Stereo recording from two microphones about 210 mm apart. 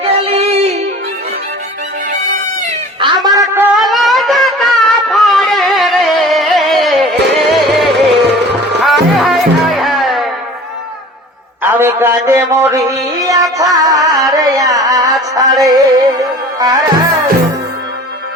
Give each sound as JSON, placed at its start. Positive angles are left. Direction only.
{"t": 0.1, "sound": "music", "side_deg": -30}
{"t": 3.0, "sound": "a sound", "side_deg": -15}
{"t": 3.8, "sound": "a sound", "side_deg": 0}
{"t": 8.8, "sound": "music", "side_deg": 0}
{"t": 11.6, "sound": "a man's voice", "side_deg": -10}
{"t": 13.2, "sound": "music", "side_deg": -15}